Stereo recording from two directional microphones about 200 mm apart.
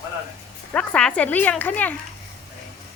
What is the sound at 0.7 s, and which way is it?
Speech, 5° left (ahead or behind).